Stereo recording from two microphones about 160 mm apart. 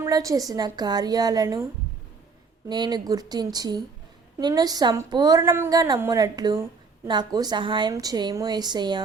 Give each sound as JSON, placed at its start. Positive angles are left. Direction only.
{"t": 0.0, "sound": "a woman's voice", "side_deg": -20}
{"t": 2.6, "sound": "a woman's voice", "side_deg": -25}